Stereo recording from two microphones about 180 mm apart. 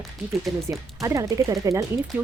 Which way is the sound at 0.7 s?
15° right (ahead or behind).